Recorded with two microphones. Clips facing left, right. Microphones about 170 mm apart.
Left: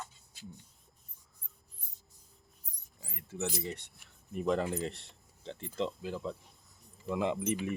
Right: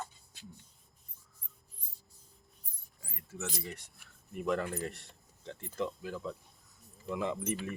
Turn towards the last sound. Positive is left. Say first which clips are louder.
# left 3 dB
turn(degrees=20)  # may be behind; listen again after turning